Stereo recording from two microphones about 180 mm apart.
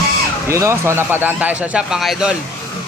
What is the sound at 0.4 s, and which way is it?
Speech, 15° right (ahead or behind).